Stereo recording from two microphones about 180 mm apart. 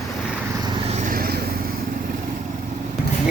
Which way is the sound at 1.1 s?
55° right (ahead or behind).